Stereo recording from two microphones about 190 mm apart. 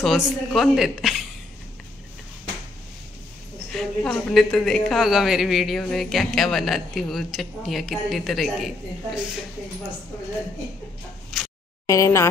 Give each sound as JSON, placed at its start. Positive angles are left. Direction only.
{"t": 0.0, "sound": "a woman's voice", "side_deg": 0}
{"t": 3.7, "sound": "a woman's voice", "side_deg": 5}
{"t": 11.3, "sound": "a sound", "side_deg": 0}
{"t": 11.8, "sound": "speech", "side_deg": 15}